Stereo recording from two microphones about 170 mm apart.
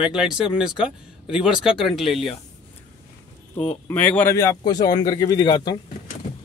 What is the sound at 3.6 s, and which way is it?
A man's voice, 10° left (ahead or behind).